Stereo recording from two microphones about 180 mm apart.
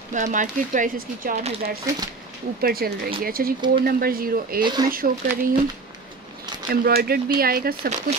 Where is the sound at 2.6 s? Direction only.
55° right (ahead or behind).